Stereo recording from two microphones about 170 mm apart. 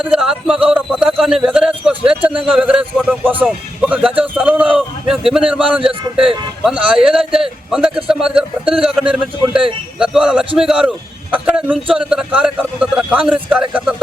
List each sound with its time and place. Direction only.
0.0 s a man's voice: 5° right (ahead or behind)
5.8 s a man's voice: 30° right (ahead or behind)
6.7 s a man's voice: 5° right (ahead or behind)